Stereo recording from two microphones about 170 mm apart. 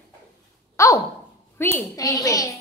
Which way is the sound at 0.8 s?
20° left (ahead or behind).